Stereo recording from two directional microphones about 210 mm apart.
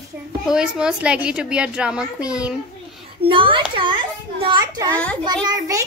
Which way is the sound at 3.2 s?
25° right (ahead or behind).